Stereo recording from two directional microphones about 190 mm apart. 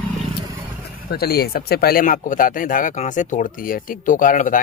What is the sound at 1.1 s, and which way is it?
A man's voice, 55° left (ahead or behind).